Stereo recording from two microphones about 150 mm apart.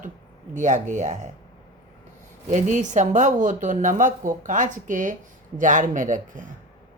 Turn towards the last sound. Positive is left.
turn(degrees=-60)  # may be behind; listen again after turning